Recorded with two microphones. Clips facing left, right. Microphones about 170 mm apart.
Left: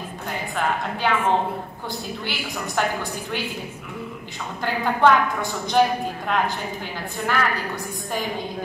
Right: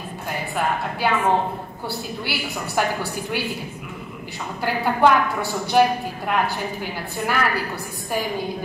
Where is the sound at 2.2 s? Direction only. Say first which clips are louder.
Right 1 dB; 10° right (ahead or behind).